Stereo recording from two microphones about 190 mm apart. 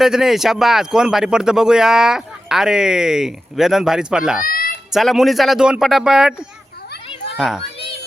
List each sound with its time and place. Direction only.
0.0 s speech: centre (ahead or behind)
4.4 s a sound: 50° left (ahead or behind)
4.9 s speech: centre (ahead or behind)
7.3 s a child's voice: 5° right (ahead or behind)